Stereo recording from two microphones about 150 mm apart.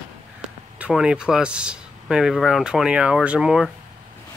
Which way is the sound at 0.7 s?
10° right (ahead or behind).